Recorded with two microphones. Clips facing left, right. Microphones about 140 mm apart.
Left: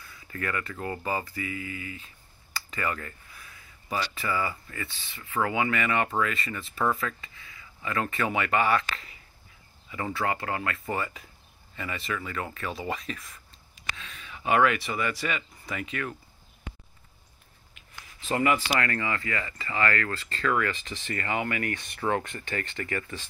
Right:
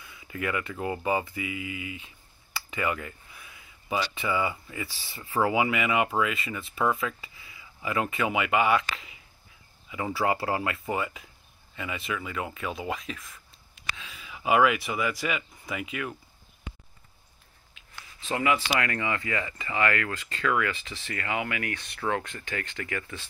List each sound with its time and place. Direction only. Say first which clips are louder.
0.0 s speech: right 2 dB; 10° right (ahead or behind)
7.4 s a sound: right 2 dB; 15° right (ahead or behind)
8.1 s speech: even; 5° right (ahead or behind)
10.2 s speech: right 3 dB; 15° right (ahead or behind)
10.9 s speech: right 1 dB; 5° right (ahead or behind)
18.3 s speech: left 1 dB; centre (ahead or behind)
18.8 s speech: even; 10° right (ahead or behind)